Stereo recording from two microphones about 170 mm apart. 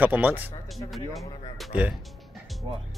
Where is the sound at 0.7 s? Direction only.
Centre (ahead or behind).